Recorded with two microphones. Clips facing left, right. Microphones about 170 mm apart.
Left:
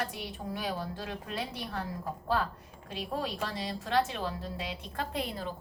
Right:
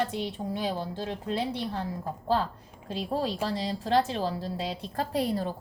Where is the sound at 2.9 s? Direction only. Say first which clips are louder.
Right 5 dB; 30° right (ahead or behind).